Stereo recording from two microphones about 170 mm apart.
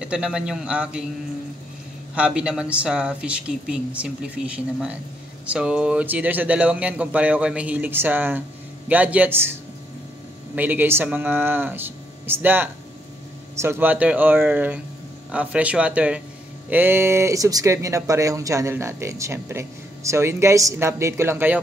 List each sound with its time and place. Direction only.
0.0 s a man's voice: 5° right (ahead or behind)
2.1 s speech: 5° right (ahead or behind)